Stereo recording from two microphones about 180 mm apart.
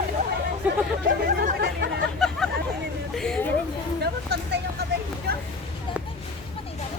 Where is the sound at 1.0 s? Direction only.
50° right (ahead or behind).